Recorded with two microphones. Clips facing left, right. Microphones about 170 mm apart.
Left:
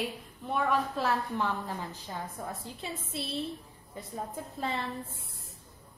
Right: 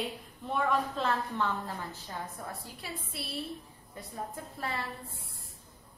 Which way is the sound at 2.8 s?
25° left (ahead or behind).